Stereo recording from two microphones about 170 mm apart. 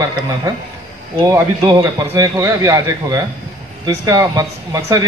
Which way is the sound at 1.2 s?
15° right (ahead or behind).